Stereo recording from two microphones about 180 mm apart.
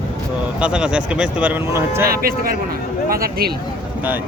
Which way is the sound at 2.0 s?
55° right (ahead or behind).